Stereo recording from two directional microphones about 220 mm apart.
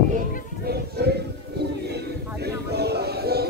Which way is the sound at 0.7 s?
45° right (ahead or behind).